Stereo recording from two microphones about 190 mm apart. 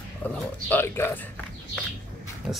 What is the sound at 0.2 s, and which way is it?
Speech, 10° left (ahead or behind).